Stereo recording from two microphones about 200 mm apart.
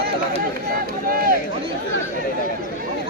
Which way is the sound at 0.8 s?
45° right (ahead or behind).